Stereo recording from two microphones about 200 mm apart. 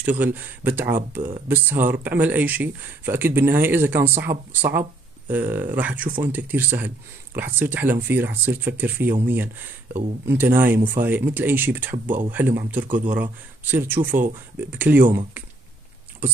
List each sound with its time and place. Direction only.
0.0 s speech: 10° right (ahead or behind)